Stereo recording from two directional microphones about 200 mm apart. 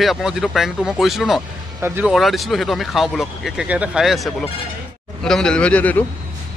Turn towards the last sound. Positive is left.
turn(degrees=5)  # may be behind; listen again after turning